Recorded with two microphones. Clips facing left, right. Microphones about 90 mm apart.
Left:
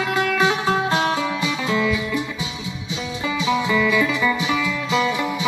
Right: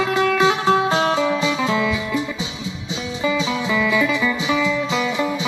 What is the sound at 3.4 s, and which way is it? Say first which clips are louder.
Music: left 3 dB; 15° left (ahead or behind).